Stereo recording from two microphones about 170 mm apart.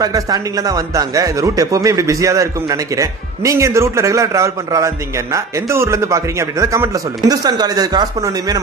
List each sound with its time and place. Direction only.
0.0 s speech: 20° right (ahead or behind)